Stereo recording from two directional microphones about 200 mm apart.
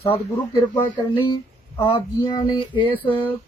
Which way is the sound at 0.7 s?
20° left (ahead or behind).